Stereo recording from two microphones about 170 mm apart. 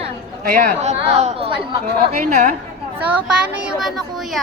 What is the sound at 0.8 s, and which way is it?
Speech, 40° right (ahead or behind).